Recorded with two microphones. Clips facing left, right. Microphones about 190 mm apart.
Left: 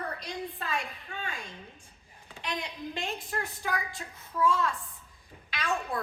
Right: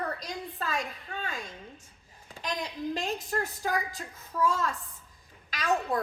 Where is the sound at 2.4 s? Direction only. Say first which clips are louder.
Right 2 dB; 40° right (ahead or behind).